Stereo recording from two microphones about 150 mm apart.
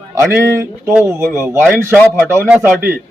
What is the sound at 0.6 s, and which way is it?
A man's voice, 15° right (ahead or behind).